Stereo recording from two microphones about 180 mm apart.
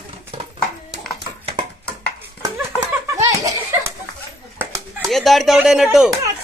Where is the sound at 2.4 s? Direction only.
20° right (ahead or behind).